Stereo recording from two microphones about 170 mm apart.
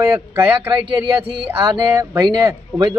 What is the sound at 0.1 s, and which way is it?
A man's voice, 10° right (ahead or behind).